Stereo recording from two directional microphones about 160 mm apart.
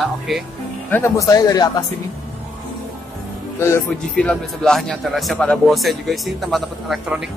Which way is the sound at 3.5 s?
15° left (ahead or behind).